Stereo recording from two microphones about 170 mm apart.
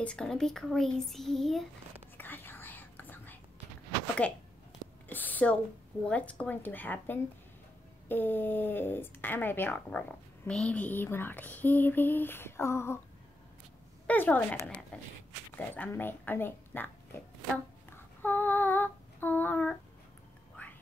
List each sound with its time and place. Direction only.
0.0 s a child's voice: 5° left (ahead or behind)
2.1 s whispering: 10° left (ahead or behind)
4.2 s speech: 10° left (ahead or behind)
14.0 s speech: 10° left (ahead or behind)
14.9 s a sound: 5° left (ahead or behind)
15.5 s speech: 10° left (ahead or behind)
18.2 s female singing: 10° left (ahead or behind)
20.6 s whispering: 10° left (ahead or behind)